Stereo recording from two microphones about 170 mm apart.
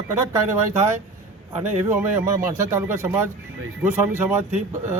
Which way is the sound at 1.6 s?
15° right (ahead or behind).